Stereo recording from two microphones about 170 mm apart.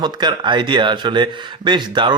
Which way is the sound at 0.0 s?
25° right (ahead or behind).